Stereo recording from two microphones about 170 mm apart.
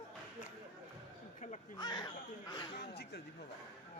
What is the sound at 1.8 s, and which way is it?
Speech, 25° left (ahead or behind).